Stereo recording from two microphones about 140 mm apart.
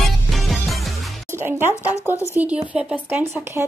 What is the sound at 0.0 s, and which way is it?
Music, centre (ahead or behind).